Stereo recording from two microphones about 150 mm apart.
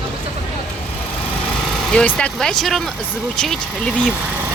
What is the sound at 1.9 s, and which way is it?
Speech, 5° left (ahead or behind).